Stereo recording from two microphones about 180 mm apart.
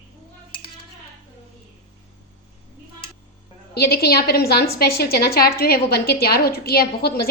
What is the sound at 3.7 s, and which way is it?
A woman's voice, 60° left (ahead or behind).